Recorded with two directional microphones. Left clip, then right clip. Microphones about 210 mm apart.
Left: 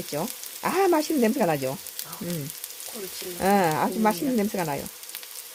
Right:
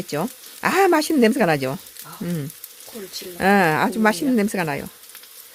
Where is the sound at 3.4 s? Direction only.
25° right (ahead or behind).